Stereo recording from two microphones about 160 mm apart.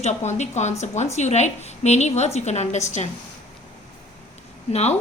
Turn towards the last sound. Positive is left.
turn(degrees=40)  # may be behind; listen again after turning